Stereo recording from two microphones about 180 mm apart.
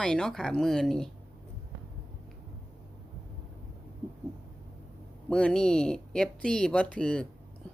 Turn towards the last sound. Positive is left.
turn(degrees=5)  # may be behind; listen again after turning